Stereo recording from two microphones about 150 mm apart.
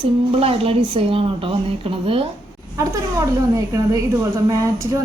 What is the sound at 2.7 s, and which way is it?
Speech, 20° right (ahead or behind).